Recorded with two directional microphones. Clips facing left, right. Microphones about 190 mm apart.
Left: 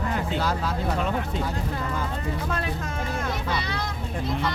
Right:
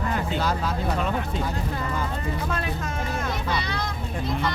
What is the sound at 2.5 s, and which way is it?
Speech, 35° left (ahead or behind).